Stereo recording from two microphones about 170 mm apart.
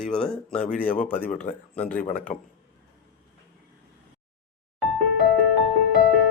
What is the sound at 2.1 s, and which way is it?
Speech, 50° left (ahead or behind).